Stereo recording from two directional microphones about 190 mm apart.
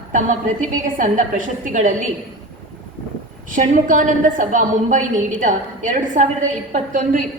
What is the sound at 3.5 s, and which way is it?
A man's voice, 45° right (ahead or behind).